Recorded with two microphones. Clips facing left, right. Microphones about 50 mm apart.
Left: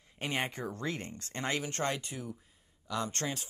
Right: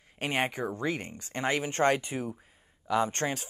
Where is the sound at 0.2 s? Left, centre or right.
Right.